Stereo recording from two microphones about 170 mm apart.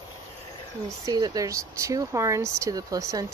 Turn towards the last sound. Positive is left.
turn(degrees=-20)  # may be behind; listen again after turning